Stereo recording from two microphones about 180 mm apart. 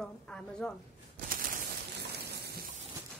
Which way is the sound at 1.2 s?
50° right (ahead or behind).